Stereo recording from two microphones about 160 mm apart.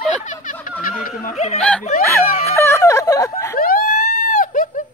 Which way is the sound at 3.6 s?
65° left (ahead or behind).